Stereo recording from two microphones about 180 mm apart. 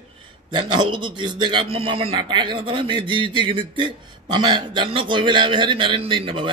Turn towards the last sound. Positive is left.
turn(degrees=-30)  # may be behind; listen again after turning